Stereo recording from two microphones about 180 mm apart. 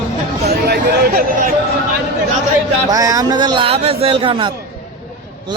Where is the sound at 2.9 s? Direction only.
20° right (ahead or behind).